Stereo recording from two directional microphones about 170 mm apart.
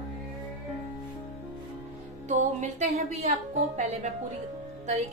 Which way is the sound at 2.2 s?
45° right (ahead or behind).